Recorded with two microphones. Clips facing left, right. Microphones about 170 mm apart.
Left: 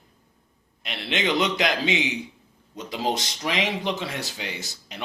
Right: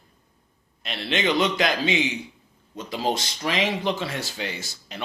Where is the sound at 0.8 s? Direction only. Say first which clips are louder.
Right 2 dB; 20° left (ahead or behind).